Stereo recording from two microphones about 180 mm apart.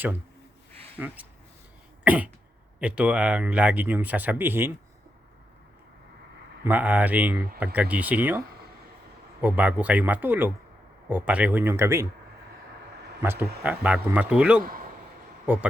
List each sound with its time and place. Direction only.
0.9 s speech: 10° right (ahead or behind)
6.7 s speech: 10° right (ahead or behind)
9.4 s speech: 10° right (ahead or behind)
13.2 s speech: 10° right (ahead or behind)
14.6 s a man's voice: 50° right (ahead or behind)